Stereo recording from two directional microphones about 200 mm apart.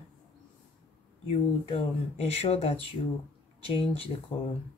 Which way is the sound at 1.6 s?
30° left (ahead or behind).